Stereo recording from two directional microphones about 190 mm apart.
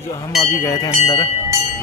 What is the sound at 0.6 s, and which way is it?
Speech, 20° left (ahead or behind).